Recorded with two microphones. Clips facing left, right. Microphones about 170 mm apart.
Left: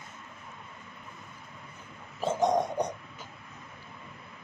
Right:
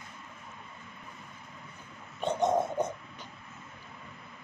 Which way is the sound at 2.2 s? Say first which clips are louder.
Left 1 dB; centre (ahead or behind).